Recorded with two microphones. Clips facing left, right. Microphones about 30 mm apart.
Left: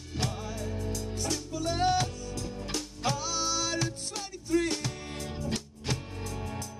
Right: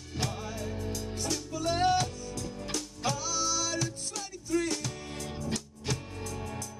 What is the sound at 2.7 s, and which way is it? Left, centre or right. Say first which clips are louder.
Music: left 1 dB; centre.